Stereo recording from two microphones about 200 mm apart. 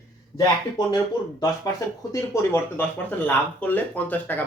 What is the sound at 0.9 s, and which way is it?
Speech, 20° left (ahead or behind).